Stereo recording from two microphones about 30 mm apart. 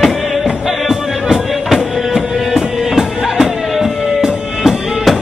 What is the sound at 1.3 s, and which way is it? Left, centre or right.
Music, centre.